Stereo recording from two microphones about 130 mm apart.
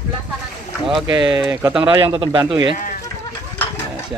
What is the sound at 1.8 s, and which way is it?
Speech, 40° right (ahead or behind).